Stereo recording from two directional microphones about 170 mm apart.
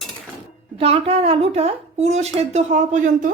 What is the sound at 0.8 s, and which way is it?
A woman's voice, 35° right (ahead or behind).